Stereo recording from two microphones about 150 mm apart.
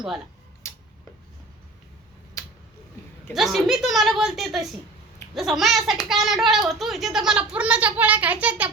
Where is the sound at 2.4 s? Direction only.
25° left (ahead or behind).